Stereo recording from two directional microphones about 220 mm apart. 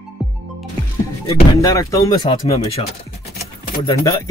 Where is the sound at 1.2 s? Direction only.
25° left (ahead or behind).